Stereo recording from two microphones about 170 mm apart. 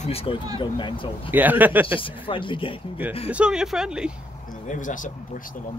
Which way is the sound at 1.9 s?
30° left (ahead or behind).